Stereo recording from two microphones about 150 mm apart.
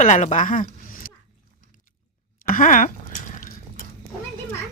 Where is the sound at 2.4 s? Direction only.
60° left (ahead or behind).